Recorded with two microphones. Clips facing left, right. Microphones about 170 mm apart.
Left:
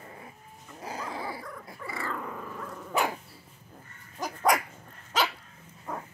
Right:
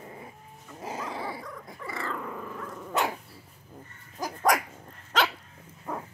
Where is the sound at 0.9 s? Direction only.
Centre (ahead or behind).